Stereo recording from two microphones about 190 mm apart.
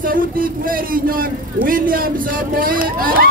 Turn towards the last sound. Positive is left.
turn(degrees=-50)  # may be behind; listen again after turning